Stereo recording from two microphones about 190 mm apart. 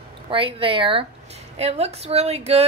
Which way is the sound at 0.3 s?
30° right (ahead or behind).